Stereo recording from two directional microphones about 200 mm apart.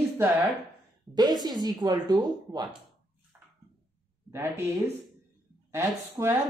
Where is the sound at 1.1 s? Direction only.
20° right (ahead or behind).